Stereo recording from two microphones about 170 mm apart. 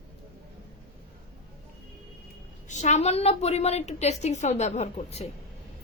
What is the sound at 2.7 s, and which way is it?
A woman's voice, 45° left (ahead or behind).